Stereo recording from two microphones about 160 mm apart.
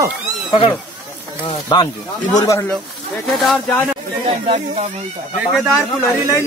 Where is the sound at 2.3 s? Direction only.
25° left (ahead or behind).